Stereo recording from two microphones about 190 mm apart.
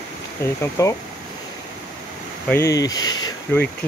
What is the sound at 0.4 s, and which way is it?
Speech, 15° left (ahead or behind).